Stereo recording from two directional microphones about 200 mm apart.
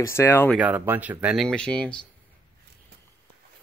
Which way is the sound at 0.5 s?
5° right (ahead or behind).